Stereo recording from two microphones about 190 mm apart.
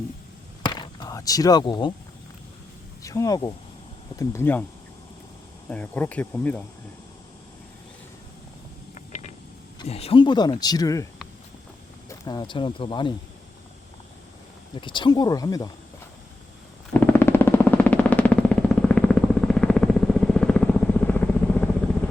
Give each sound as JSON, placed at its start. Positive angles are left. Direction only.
{"t": 0.6, "sound": "a sound", "side_deg": 20}
{"t": 3.0, "sound": "speech", "side_deg": 15}
{"t": 5.6, "sound": "speech", "side_deg": 10}
{"t": 9.0, "sound": "a sound", "side_deg": 40}
{"t": 9.7, "sound": "speech", "side_deg": 30}
{"t": 14.8, "sound": "speech", "side_deg": 25}
{"t": 16.9, "sound": "vehicle", "side_deg": 10}